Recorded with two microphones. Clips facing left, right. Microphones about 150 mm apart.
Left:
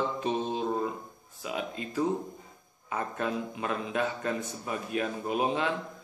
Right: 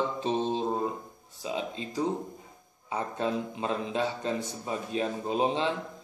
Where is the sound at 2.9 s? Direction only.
25° right (ahead or behind).